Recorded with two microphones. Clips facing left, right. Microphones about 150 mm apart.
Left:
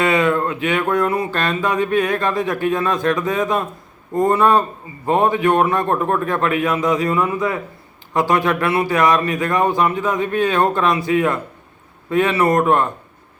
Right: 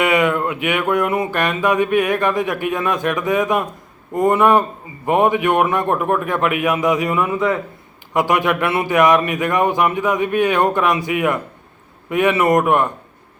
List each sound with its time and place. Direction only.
0.0 s music: 15° right (ahead or behind)
4.1 s speech: 20° right (ahead or behind)
5.0 s music: 15° right (ahead or behind)